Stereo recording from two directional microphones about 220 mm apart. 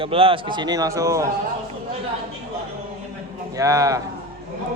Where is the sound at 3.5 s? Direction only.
15° right (ahead or behind).